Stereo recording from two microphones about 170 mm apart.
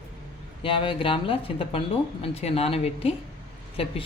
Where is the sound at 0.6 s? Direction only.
30° left (ahead or behind).